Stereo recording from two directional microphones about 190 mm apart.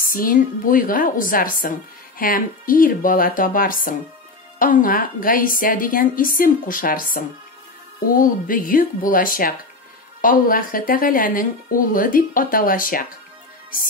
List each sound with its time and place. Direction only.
0.0 s speech: 45° left (ahead or behind)